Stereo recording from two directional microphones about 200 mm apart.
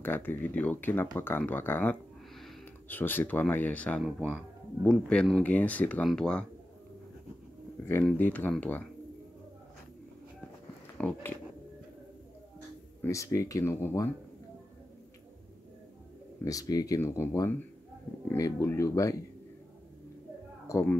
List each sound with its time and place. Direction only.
0.0 s speech: 10° left (ahead or behind)
7.8 s speech: 10° left (ahead or behind)
11.0 s speech: 5° left (ahead or behind)
13.0 s speech: 15° left (ahead or behind)
16.4 s speech: 15° left (ahead or behind)
20.6 s speech: 15° left (ahead or behind)